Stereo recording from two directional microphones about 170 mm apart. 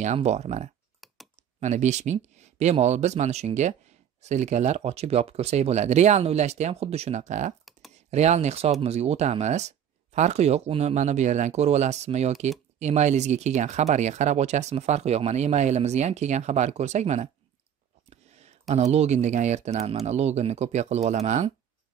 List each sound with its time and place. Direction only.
0.0 s speech: 40° right (ahead or behind)
1.0 s computer keyboard: centre (ahead or behind)
1.6 s speech: 45° right (ahead or behind)